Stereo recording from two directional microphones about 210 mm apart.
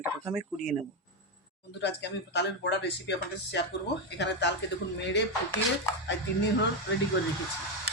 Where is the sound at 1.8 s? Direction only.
55° left (ahead or behind).